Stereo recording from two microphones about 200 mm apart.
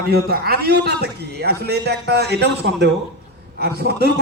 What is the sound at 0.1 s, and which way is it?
A man's voice, 50° right (ahead or behind).